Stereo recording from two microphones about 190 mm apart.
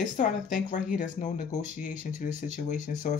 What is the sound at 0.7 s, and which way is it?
Speech, 45° left (ahead or behind).